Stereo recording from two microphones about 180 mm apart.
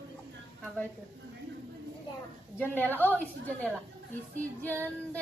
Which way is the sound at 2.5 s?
10° left (ahead or behind).